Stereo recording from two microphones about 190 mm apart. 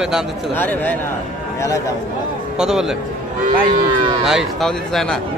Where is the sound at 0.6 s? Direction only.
10° left (ahead or behind).